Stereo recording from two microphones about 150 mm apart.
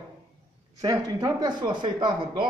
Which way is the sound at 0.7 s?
25° right (ahead or behind).